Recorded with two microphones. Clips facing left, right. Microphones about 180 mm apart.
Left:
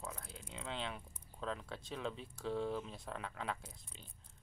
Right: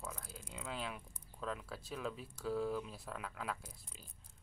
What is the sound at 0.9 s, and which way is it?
Speech, 30° left (ahead or behind).